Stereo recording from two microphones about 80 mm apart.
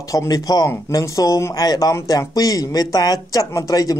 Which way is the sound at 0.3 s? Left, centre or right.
Left.